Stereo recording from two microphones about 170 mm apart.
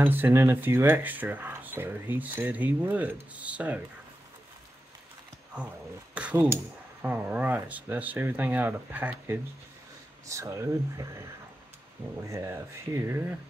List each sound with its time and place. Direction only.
0.0 s speech: 10° right (ahead or behind)
6.1 s speech: 10° right (ahead or behind)